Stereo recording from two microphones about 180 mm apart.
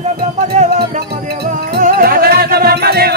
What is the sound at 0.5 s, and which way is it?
Music, 40° right (ahead or behind).